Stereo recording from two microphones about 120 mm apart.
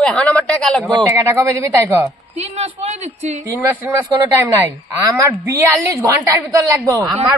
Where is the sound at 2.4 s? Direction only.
70° right (ahead or behind).